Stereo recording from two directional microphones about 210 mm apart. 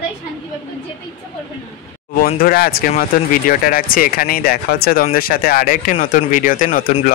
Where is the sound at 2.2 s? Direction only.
45° left (ahead or behind).